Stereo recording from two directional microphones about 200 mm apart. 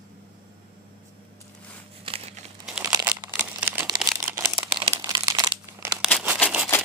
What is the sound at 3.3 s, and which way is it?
Crumpling, 10° right (ahead or behind).